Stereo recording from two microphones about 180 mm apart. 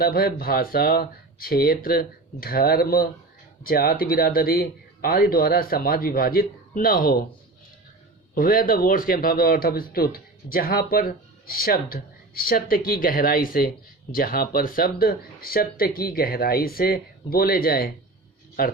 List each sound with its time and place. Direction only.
0.0 s speech: 55° left (ahead or behind)
8.4 s speech: 55° left (ahead or behind)